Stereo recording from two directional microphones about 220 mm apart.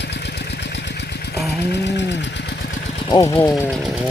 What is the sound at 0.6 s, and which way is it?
Engine, 55° left (ahead or behind).